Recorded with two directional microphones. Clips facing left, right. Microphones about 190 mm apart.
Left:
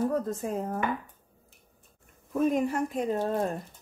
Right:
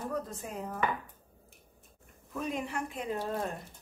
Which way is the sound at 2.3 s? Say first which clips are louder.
Left 9 dB; 45° left (ahead or behind).